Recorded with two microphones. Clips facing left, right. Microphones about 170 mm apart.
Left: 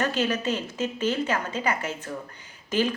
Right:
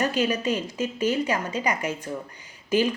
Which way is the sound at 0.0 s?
10° right (ahead or behind).